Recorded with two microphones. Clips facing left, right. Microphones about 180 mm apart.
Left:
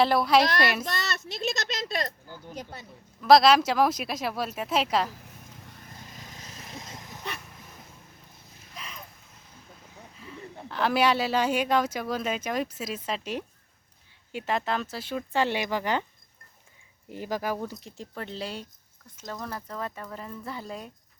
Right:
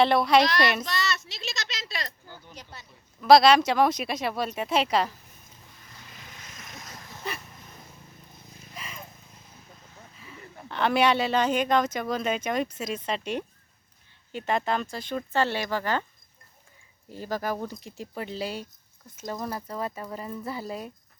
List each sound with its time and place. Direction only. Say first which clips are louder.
0.0 s speech: right 1 dB; centre (ahead or behind)
0.9 s speech: right 2 dB; 50° left (ahead or behind)
3.2 s speech: right 1 dB; centre (ahead or behind)
5.9 s vehicle: left 1 dB; 40° left (ahead or behind); by 7.2 s 20° left (ahead or behind)
8.7 s a sound: right 1 dB; centre (ahead or behind)
10.7 s speech: right 1 dB; centre (ahead or behind)
17.1 s speech: even; 15° left (ahead or behind)
17.6 s speech: right 1 dB; centre (ahead or behind)